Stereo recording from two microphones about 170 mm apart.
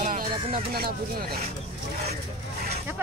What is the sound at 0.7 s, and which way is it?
Speech, 65° right (ahead or behind).